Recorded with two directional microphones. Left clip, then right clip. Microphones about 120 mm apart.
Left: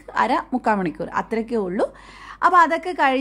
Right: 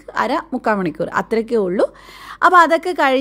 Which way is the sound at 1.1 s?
40° right (ahead or behind).